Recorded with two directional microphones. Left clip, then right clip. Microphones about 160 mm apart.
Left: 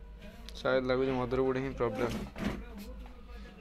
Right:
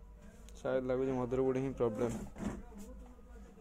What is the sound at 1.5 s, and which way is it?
Speech, 30° right (ahead or behind).